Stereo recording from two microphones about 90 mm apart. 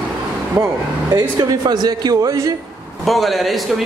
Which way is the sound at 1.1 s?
50° right (ahead or behind).